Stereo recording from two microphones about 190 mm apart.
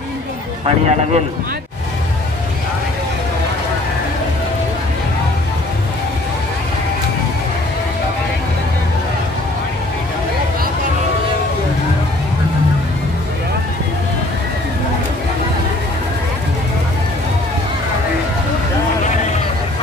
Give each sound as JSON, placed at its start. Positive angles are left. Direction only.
{"t": 0.7, "sound": "a man's voice", "side_deg": -35}